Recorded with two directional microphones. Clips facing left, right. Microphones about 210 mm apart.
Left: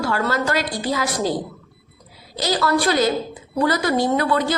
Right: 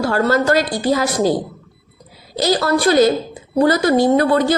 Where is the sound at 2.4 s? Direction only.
45° right (ahead or behind).